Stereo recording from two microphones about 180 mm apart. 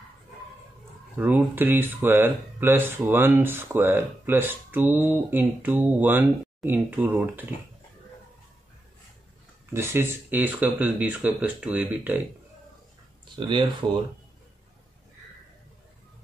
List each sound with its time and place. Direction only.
1.1 s speech: 10° right (ahead or behind)
9.7 s speech: 15° right (ahead or behind)
13.5 s speech: 25° right (ahead or behind)